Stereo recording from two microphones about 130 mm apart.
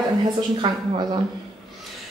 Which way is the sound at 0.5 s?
35° right (ahead or behind).